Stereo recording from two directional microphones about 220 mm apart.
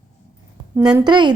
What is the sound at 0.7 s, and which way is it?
Speech, 5° right (ahead or behind).